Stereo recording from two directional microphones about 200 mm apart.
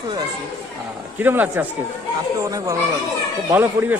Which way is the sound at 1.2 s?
10° right (ahead or behind).